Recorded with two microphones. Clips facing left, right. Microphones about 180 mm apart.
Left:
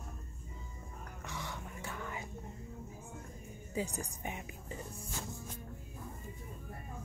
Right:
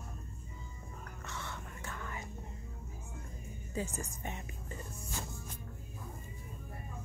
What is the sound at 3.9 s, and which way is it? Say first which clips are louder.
Speech: left 1 dB; 10° left (ahead or behind).